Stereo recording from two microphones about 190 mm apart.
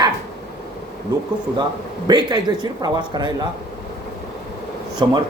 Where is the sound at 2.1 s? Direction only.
20° right (ahead or behind).